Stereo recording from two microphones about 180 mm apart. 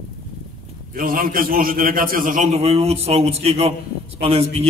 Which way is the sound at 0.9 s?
50° right (ahead or behind).